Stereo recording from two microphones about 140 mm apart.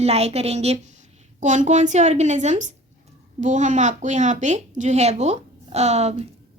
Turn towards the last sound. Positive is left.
turn(degrees=-50)  # may be behind; listen again after turning